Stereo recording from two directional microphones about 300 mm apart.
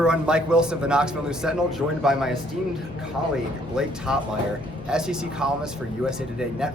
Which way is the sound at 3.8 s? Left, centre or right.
Centre.